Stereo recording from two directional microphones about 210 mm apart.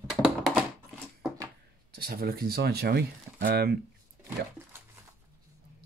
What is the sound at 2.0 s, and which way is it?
Speech, 45° right (ahead or behind).